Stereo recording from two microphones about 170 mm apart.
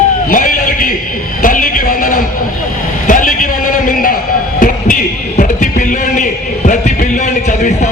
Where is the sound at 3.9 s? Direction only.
55° left (ahead or behind).